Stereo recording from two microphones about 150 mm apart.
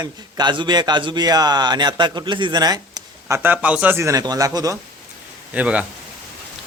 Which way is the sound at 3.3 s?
15° right (ahead or behind).